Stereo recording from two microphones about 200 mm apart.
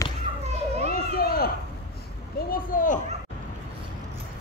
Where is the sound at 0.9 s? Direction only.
50° left (ahead or behind).